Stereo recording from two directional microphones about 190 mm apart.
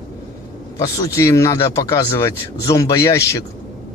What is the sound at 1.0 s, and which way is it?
Speech, 15° left (ahead or behind).